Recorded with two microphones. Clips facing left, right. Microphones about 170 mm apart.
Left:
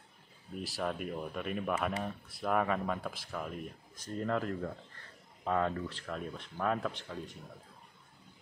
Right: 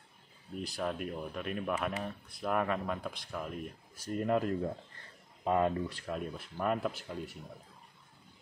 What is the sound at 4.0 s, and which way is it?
Speech, 15° right (ahead or behind).